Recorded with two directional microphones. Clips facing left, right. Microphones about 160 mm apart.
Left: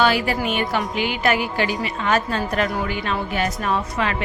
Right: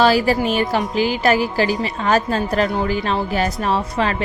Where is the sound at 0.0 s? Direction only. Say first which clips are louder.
Right 4 dB; 35° right (ahead or behind).